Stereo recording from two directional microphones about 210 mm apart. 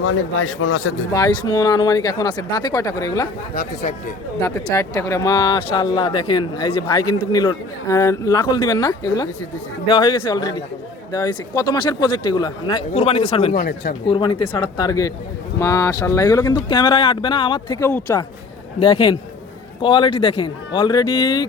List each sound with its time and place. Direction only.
0.0 s speech: 75° left (ahead or behind)
1.1 s speech: 20° left (ahead or behind)
4.4 s speech: 15° left (ahead or behind)
13.6 s speech: 45° left (ahead or behind)
14.1 s speech: 20° left (ahead or behind)